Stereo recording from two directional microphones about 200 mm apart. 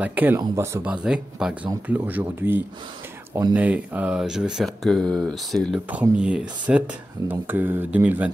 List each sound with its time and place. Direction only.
0.0 s speech: 10° right (ahead or behind)